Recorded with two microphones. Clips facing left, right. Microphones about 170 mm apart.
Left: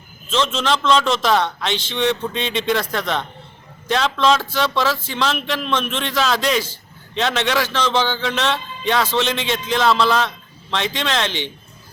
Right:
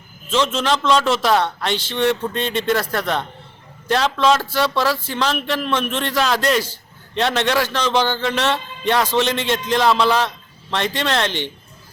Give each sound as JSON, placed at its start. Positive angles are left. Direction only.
{"t": 0.3, "sound": "speech", "side_deg": -10}
{"t": 9.3, "sound": "a man's voice", "side_deg": -50}
{"t": 9.7, "sound": "speech", "side_deg": -15}